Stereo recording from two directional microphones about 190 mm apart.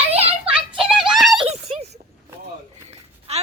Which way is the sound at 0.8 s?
Centre (ahead or behind).